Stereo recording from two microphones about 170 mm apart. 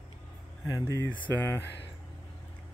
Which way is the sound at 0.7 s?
15° left (ahead or behind).